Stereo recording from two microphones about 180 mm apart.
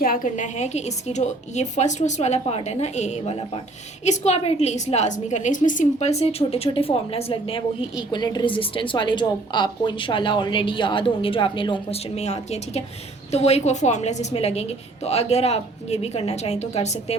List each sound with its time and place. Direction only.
0.0 s a woman's voice: 50° left (ahead or behind)